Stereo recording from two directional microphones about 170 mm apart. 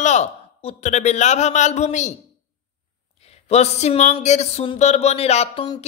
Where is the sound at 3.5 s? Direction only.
40° left (ahead or behind).